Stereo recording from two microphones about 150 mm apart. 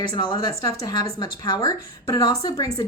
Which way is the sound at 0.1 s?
25° left (ahead or behind).